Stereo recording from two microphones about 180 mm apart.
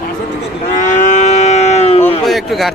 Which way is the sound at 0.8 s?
45° left (ahead or behind).